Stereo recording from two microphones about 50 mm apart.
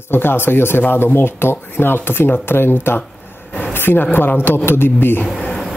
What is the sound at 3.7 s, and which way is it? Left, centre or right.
Speech, left.